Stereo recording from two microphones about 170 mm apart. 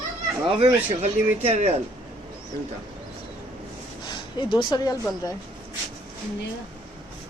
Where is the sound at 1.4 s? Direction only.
40° right (ahead or behind).